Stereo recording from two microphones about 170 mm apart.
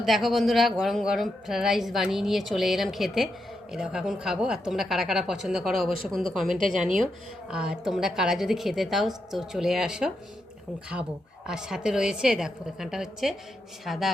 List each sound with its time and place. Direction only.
0.0 s a woman's voice: centre (ahead or behind)
6.5 s a woman's voice: 50° right (ahead or behind)
7.5 s a woman's voice: 5° right (ahead or behind)
11.4 s a woman's voice: 5° right (ahead or behind)